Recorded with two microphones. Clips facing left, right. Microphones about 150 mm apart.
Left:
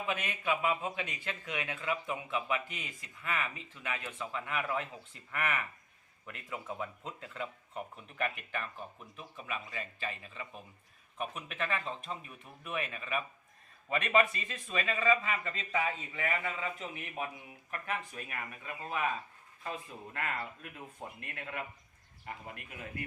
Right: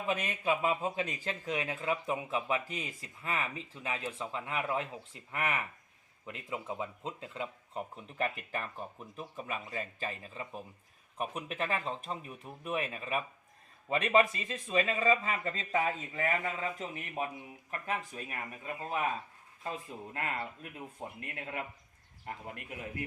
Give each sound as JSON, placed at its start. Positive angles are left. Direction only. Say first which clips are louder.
{"t": 0.1, "sound": "speech", "louder": "right 3 dB", "side_deg": -35}